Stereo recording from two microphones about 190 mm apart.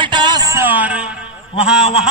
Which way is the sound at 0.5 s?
10° right (ahead or behind).